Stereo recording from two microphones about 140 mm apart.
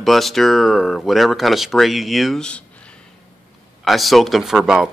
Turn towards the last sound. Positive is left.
turn(degrees=-5)  # may be behind; listen again after turning